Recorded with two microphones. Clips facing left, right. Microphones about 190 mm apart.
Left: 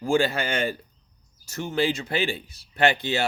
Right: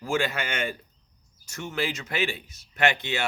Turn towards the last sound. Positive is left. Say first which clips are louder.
# left 3 dB
turn(degrees=35)  # may be behind; listen again after turning